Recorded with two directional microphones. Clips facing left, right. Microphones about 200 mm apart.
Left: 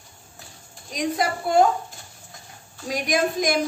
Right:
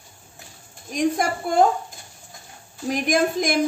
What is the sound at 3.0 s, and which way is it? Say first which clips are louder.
Speech: right 1 dB; 50° right (ahead or behind).